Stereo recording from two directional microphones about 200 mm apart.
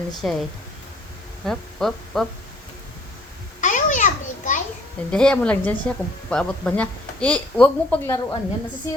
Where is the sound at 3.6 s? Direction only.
40° left (ahead or behind).